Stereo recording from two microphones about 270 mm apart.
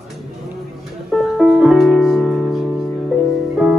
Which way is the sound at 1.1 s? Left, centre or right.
Centre.